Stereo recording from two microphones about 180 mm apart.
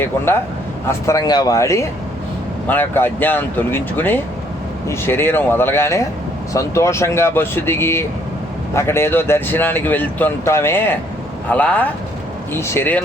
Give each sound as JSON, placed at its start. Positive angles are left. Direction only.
{"t": 0.9, "sound": "speech", "side_deg": 15}